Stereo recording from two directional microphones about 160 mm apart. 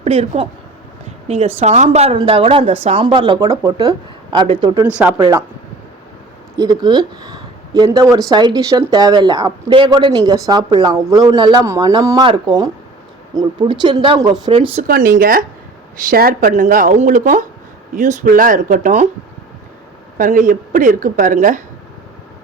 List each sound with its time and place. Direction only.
0.0 s speech: 40° right (ahead or behind)
1.5 s a woman's voice: 45° right (ahead or behind); by 5.4 s 20° right (ahead or behind)
6.6 s a woman's voice: 25° right (ahead or behind)
14.8 s a woman's voice: 60° right (ahead or behind)
20.1 s a woman's voice: 55° right (ahead or behind)